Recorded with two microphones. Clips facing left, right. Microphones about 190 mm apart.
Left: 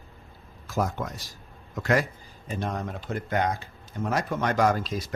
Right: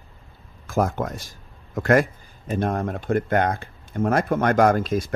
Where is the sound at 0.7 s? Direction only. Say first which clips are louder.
Right 5 dB; 50° right (ahead or behind).